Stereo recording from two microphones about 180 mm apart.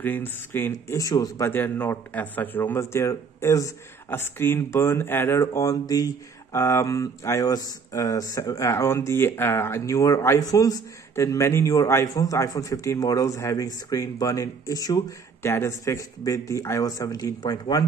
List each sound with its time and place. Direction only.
0.0 s speech: 10° left (ahead or behind)